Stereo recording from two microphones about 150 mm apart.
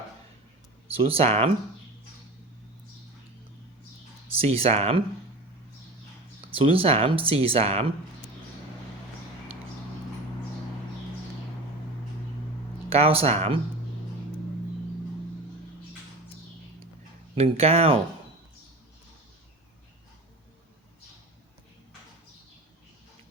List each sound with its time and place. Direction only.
0.9 s speech: 40° right (ahead or behind)
4.4 s speech: 40° right (ahead or behind)
6.5 s speech: 40° right (ahead or behind)
12.9 s speech: 40° right (ahead or behind)
17.3 s speech: 40° right (ahead or behind)